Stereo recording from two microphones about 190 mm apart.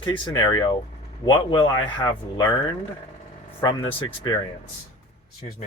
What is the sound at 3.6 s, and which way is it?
Speech, 25° left (ahead or behind).